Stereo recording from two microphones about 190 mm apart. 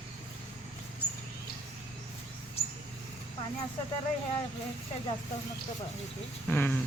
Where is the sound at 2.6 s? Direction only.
30° left (ahead or behind).